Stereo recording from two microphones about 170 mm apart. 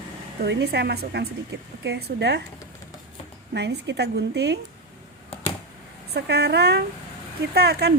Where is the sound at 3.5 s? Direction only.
85° right.